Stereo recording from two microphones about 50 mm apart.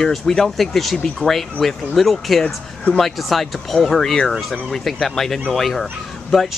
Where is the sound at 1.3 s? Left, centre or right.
Centre.